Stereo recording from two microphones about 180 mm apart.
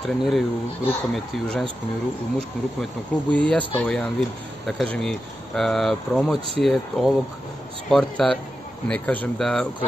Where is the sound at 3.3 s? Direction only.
5° left (ahead or behind).